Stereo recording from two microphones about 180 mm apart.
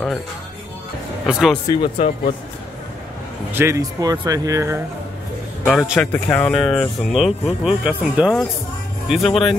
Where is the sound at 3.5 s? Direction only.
15° right (ahead or behind).